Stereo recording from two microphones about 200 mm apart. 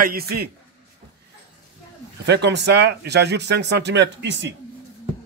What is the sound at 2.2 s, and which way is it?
A man's voice, 60° right (ahead or behind).